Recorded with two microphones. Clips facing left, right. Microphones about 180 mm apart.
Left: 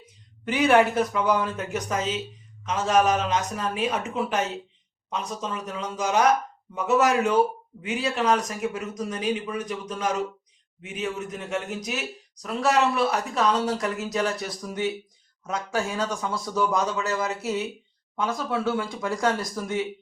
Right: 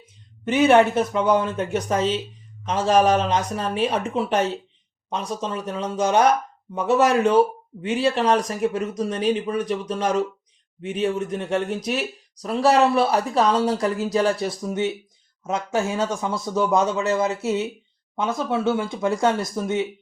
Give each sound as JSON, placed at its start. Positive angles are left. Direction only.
{"t": 0.0, "sound": "speech", "side_deg": -25}